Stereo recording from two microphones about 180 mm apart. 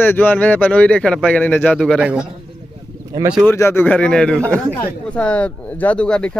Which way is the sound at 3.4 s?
15° left (ahead or behind).